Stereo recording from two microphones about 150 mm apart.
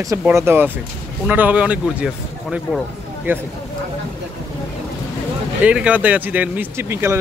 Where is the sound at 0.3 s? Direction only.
15° right (ahead or behind).